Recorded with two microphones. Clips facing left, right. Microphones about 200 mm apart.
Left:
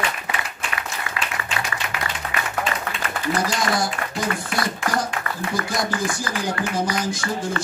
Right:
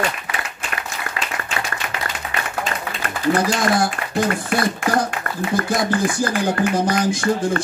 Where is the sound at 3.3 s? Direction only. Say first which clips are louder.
Right 5 dB; 55° right (ahead or behind).